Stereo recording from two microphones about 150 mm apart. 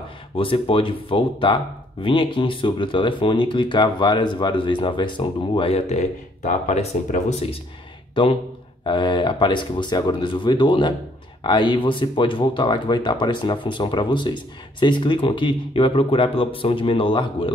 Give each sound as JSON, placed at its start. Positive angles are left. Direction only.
{"t": 0.4, "sound": "speech", "side_deg": 35}